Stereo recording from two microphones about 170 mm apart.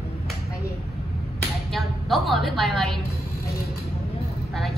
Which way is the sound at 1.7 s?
Centre (ahead or behind).